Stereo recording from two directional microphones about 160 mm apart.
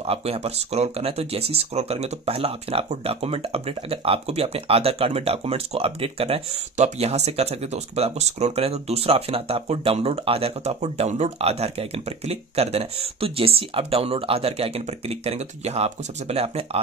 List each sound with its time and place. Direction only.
0.0 s speech: 40° right (ahead or behind)